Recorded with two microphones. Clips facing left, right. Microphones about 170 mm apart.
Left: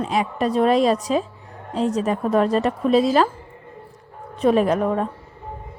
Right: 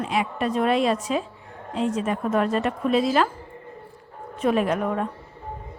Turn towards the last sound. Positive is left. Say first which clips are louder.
# left 4 dB
turn(degrees=35)  # may be behind; listen again after turning